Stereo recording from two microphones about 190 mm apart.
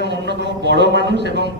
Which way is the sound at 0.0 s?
65° right (ahead or behind).